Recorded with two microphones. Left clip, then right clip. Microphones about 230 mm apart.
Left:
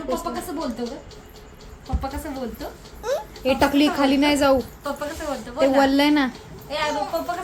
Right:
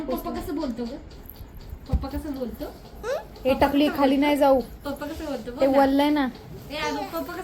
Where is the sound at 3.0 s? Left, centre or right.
Centre.